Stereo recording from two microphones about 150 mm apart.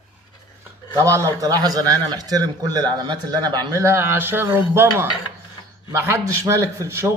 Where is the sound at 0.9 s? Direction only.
20° right (ahead or behind).